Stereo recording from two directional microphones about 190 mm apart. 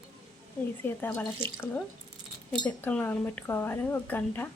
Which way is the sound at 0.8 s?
10° left (ahead or behind).